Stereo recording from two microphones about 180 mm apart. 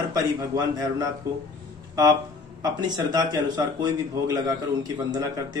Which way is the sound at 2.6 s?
20° right (ahead or behind).